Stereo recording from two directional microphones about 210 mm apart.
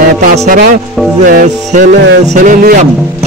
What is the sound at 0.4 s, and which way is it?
A man's voice, 40° right (ahead or behind).